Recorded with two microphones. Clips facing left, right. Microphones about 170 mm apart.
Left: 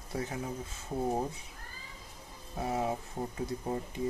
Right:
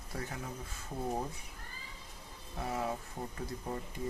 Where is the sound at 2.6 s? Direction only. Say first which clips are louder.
Left 4 dB; 25° left (ahead or behind).